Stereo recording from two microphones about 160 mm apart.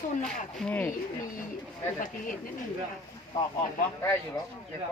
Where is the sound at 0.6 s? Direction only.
5° left (ahead or behind).